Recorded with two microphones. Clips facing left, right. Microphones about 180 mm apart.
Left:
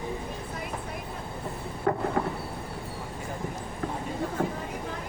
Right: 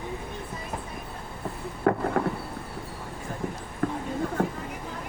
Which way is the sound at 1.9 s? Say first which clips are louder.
Right 3 dB; 55° right (ahead or behind).